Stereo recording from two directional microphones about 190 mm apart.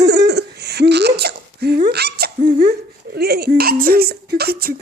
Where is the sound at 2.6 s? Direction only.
55° right (ahead or behind).